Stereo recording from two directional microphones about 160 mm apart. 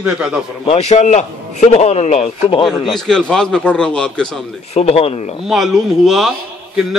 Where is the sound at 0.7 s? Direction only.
40° left (ahead or behind).